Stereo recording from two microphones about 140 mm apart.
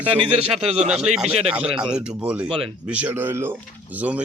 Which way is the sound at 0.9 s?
5° right (ahead or behind).